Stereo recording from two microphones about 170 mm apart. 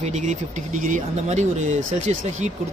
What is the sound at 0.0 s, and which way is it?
Speech, 45° right (ahead or behind).